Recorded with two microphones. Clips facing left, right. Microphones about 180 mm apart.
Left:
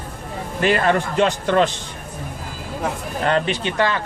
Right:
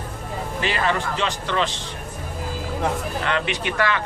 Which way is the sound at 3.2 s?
40° left (ahead or behind).